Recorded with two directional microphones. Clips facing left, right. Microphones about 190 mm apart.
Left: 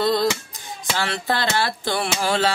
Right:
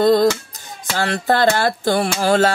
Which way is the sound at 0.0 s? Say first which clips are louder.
Right 7 dB; 45° right (ahead or behind).